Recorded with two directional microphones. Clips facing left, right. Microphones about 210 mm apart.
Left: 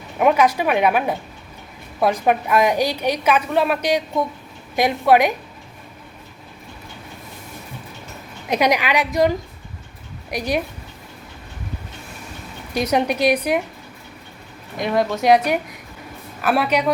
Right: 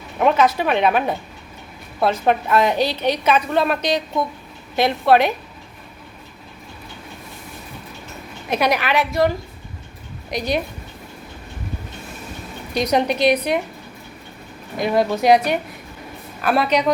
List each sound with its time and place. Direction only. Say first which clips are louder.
0.2 s a woman's voice: even; 10° left (ahead or behind)
8.4 s a woman's voice: left 1 dB; 15° left (ahead or behind)
12.7 s a woman's voice: right 1 dB; 10° left (ahead or behind)
14.8 s a woman's voice: right 2 dB; centre (ahead or behind)